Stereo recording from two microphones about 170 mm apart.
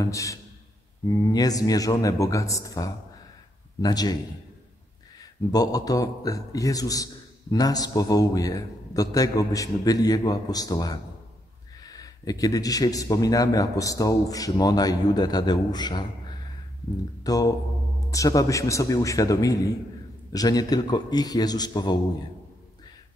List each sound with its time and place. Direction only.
0.0 s a man's voice: 20° left (ahead or behind)
5.5 s a man's voice: 20° left (ahead or behind)